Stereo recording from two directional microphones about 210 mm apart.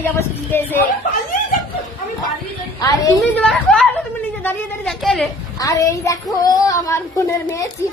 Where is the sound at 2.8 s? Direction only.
15° left (ahead or behind).